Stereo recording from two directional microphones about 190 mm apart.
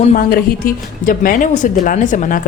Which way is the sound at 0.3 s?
45° left (ahead or behind).